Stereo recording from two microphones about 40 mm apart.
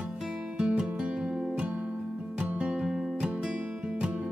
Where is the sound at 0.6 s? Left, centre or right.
Right.